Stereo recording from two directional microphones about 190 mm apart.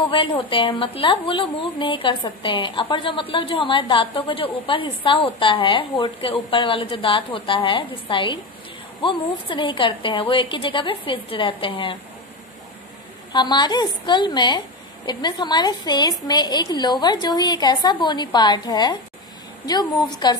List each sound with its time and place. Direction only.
0.1 s a woman's voice: 25° left (ahead or behind)
13.3 s a woman's voice: 20° left (ahead or behind)